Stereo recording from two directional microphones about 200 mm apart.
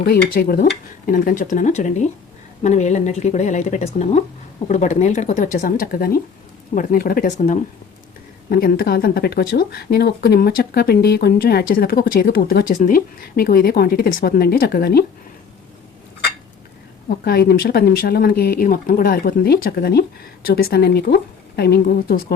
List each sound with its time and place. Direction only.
0.0 s speech: 50° left (ahead or behind)
17.2 s speech: 50° left (ahead or behind)